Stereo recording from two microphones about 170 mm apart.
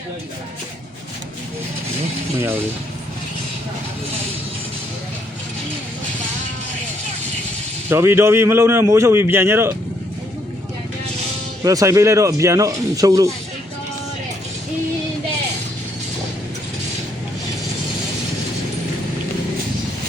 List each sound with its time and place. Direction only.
7.9 s a man's voice: 15° right (ahead or behind)
11.6 s speech: 20° right (ahead or behind)